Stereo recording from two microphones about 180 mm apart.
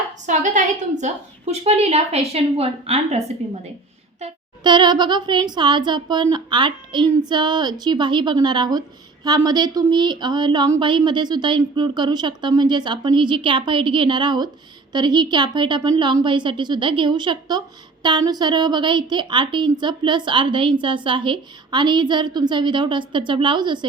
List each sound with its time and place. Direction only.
0.3 s a woman's voice: 40° right (ahead or behind)
4.6 s a woman's voice: 25° right (ahead or behind)